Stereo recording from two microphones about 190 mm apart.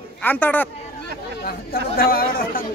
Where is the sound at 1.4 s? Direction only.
50° left (ahead or behind).